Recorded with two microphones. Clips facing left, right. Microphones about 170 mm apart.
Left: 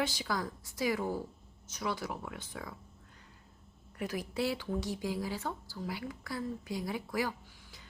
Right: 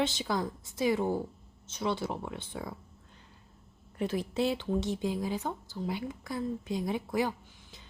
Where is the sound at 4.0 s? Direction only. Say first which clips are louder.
Right 4 dB; 25° right (ahead or behind).